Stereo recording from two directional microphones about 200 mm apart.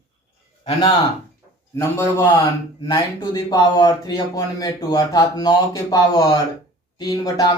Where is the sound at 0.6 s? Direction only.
25° left (ahead or behind).